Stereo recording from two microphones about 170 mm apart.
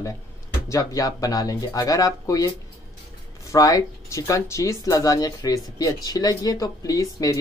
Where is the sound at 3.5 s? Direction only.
20° left (ahead or behind).